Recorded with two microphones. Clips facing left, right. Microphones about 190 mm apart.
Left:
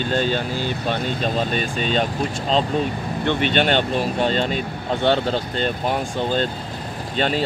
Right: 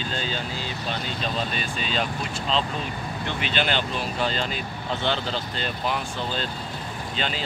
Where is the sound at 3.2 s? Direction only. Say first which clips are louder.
Left 8 dB; 50° left (ahead or behind).